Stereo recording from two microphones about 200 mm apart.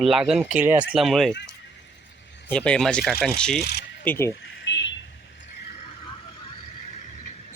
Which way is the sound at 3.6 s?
55° left (ahead or behind).